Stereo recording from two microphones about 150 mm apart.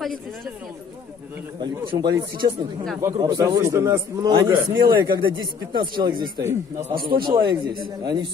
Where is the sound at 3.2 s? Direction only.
25° right (ahead or behind).